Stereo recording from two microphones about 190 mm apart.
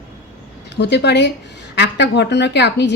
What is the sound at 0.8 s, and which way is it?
A woman's voice, 65° left (ahead or behind).